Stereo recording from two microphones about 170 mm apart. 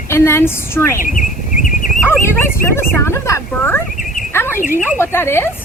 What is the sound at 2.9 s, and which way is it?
Speech, 15° left (ahead or behind).